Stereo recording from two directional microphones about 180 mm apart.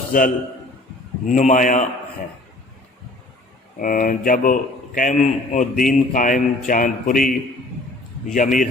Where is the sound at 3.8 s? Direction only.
50° left (ahead or behind).